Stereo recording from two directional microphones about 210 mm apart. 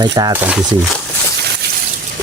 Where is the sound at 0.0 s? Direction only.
20° right (ahead or behind).